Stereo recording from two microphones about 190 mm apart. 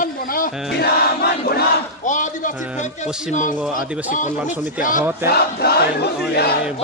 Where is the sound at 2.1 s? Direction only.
40° left (ahead or behind).